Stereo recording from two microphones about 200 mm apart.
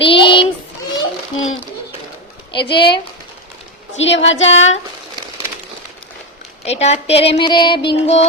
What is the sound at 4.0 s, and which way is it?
Speech, 65° left (ahead or behind).